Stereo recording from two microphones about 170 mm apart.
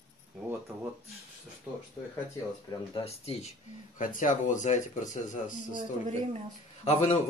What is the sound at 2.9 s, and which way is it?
Speech, 35° left (ahead or behind).